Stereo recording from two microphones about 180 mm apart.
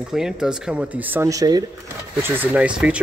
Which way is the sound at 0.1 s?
5° right (ahead or behind).